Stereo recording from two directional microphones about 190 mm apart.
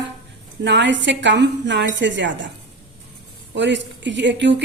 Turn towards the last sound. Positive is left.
turn(degrees=-70)  # may be behind; listen again after turning